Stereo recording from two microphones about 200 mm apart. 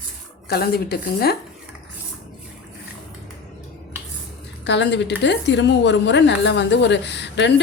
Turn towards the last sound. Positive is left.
turn(degrees=60)  # may be behind; listen again after turning